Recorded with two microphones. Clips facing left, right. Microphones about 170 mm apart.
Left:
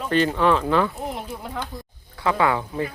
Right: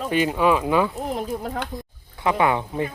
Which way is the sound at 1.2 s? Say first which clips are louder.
Right 5 dB; 45° right (ahead or behind).